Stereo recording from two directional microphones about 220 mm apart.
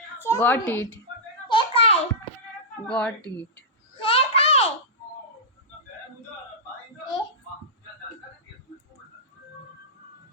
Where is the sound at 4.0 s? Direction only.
25° left (ahead or behind).